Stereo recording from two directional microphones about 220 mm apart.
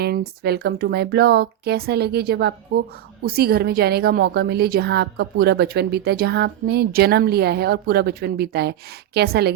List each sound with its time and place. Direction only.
0.0 s a woman's voice: 45° right (ahead or behind)